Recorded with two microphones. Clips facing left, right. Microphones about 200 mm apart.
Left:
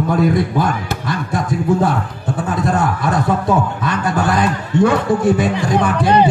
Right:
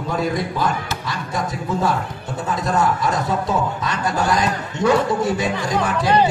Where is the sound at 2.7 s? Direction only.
55° left (ahead or behind).